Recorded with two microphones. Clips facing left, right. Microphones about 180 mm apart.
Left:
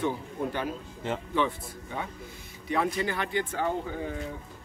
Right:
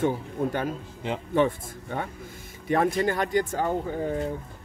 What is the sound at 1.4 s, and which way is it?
Speech, 50° right (ahead or behind).